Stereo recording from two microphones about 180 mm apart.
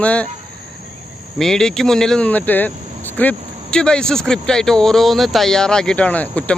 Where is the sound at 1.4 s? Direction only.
5° left (ahead or behind).